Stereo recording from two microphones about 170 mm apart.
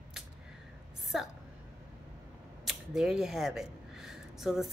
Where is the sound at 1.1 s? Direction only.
Centre (ahead or behind).